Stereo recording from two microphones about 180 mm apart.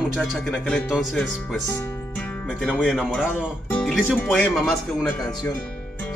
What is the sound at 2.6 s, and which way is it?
Speech, centre (ahead or behind).